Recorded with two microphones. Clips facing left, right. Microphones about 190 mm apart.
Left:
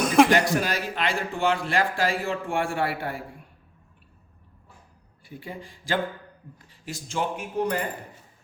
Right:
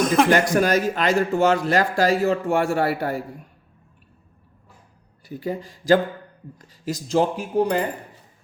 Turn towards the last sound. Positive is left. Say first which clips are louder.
# right 6 dB
turn(degrees=-30)  # may be behind; listen again after turning